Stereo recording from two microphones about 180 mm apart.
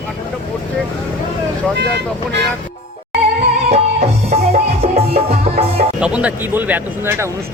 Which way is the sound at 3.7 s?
35° right (ahead or behind).